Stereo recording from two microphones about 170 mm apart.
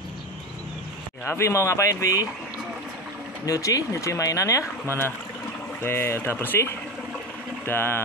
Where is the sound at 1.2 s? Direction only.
15° left (ahead or behind).